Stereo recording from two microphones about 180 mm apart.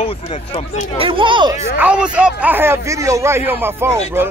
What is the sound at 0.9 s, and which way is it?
Speech, 30° right (ahead or behind).